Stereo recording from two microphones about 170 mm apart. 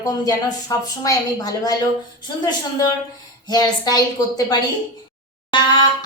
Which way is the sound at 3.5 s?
25° left (ahead or behind).